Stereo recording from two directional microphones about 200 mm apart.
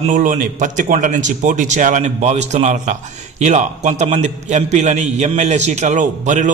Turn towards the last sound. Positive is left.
turn(degrees=-40)  # may be behind; listen again after turning